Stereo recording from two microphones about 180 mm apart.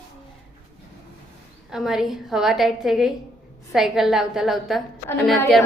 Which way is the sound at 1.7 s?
Centre (ahead or behind).